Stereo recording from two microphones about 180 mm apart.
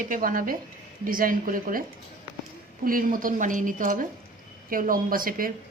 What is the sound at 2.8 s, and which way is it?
A woman's voice, 50° right (ahead or behind).